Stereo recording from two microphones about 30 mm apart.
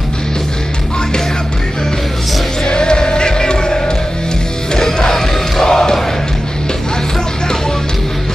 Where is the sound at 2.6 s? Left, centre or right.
Left.